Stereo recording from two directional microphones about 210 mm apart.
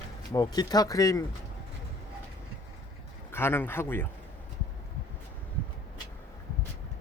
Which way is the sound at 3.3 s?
10° left (ahead or behind).